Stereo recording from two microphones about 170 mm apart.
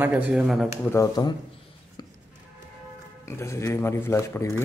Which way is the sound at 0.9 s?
20° left (ahead or behind).